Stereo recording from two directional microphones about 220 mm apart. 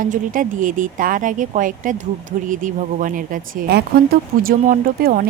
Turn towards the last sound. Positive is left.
turn(degrees=-40)  # may be behind; listen again after turning